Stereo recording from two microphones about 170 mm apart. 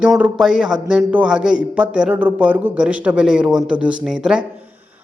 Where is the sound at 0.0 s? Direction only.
5° right (ahead or behind).